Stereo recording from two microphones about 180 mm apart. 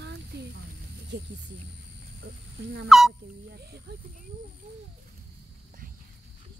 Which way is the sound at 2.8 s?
Centre (ahead or behind).